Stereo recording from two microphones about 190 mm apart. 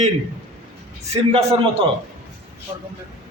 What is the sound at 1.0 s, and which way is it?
Speech, 35° right (ahead or behind).